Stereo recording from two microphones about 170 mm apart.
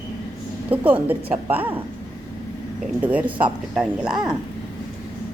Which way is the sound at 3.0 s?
10° right (ahead or behind).